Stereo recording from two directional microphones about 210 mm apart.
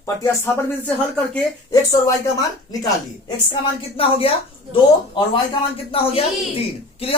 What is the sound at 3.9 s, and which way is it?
Speech, 25° left (ahead or behind).